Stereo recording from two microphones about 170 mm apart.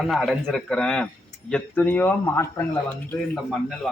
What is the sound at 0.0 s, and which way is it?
A man's voice, centre (ahead or behind).